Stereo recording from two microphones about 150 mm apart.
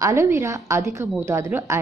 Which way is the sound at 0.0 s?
20° right (ahead or behind).